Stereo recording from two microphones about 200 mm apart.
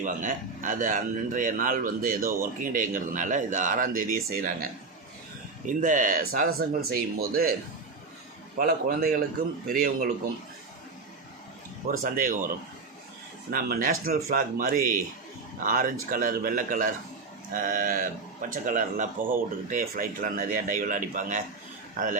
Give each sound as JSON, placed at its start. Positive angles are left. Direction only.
{"t": 0.0, "sound": "a man's voice", "side_deg": -40}
{"t": 5.8, "sound": "speech", "side_deg": -40}
{"t": 8.5, "sound": "speech", "side_deg": -50}
{"t": 11.9, "sound": "speech", "side_deg": -40}
{"t": 13.5, "sound": "a man's voice", "side_deg": -45}